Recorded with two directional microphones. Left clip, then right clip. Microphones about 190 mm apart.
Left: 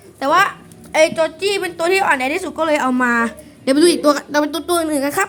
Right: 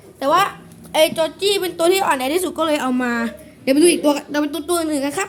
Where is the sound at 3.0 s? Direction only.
10° left (ahead or behind).